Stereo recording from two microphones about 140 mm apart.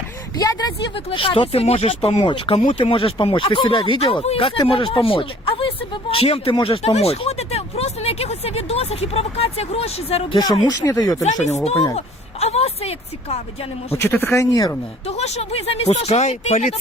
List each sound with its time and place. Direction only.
0.3 s speech: 30° left (ahead or behind)
0.9 s speech: 40° left (ahead or behind)
10.7 s speech: 25° left (ahead or behind)
11.4 s speech: 50° left (ahead or behind)
13.9 s speech: 20° left (ahead or behind)
15.0 s speech: 50° left (ahead or behind)